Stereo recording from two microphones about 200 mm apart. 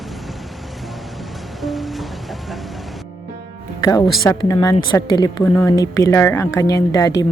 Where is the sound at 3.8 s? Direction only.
15° left (ahead or behind).